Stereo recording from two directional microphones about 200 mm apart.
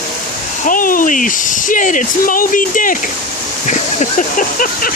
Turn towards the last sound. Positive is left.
turn(degrees=40)  # may be behind; listen again after turning